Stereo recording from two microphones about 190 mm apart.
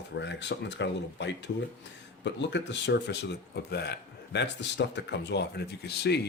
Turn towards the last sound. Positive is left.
turn(degrees=60)  # may be behind; listen again after turning